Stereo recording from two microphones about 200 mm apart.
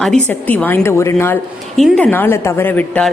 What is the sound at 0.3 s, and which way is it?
A woman's voice, 10° left (ahead or behind).